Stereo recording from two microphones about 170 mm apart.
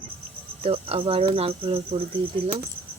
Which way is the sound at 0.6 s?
35° right (ahead or behind).